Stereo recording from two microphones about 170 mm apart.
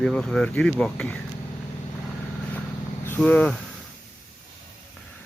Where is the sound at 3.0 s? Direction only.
10° left (ahead or behind).